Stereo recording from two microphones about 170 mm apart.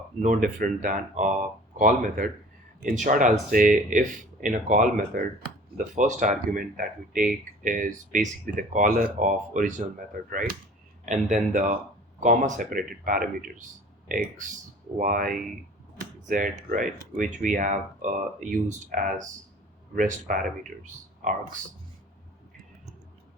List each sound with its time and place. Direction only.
0.2 s speech: 45° right (ahead or behind)